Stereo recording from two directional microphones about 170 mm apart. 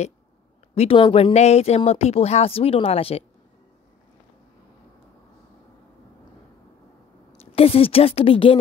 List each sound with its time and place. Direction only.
0.7 s speech: 35° left (ahead or behind)
7.5 s speech: 35° left (ahead or behind)